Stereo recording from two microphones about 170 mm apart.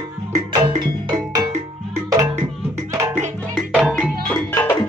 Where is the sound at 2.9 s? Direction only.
15° right (ahead or behind).